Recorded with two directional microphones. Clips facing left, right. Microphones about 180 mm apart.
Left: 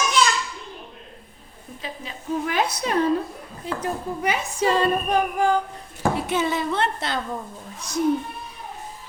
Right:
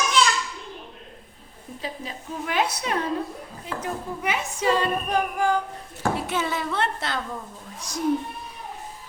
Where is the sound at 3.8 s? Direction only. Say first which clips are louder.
Left 3 dB; 35° left (ahead or behind).